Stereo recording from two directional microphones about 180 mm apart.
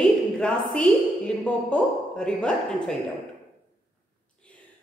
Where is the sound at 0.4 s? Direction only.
5° left (ahead or behind).